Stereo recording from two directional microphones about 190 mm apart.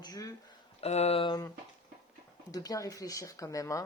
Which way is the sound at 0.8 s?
35° left (ahead or behind).